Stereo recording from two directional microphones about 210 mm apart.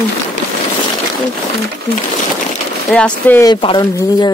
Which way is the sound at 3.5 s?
20° left (ahead or behind).